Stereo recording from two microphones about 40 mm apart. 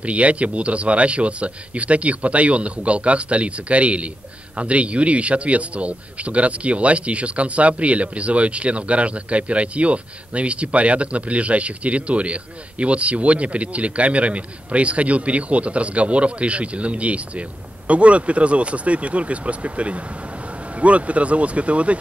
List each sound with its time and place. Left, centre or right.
0.0 s speech: right